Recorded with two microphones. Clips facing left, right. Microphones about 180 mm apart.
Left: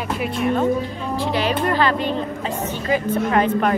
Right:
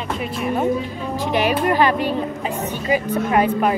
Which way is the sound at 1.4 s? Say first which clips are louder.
Right 3 dB; 15° right (ahead or behind).